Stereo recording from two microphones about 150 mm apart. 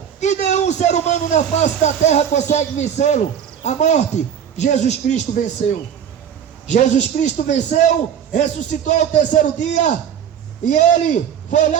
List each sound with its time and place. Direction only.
0.2 s a man's voice: 50° left (ahead or behind)
6.7 s a man's voice: 55° left (ahead or behind)